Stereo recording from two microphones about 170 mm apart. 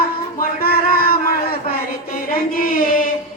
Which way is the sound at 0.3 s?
60° left (ahead or behind).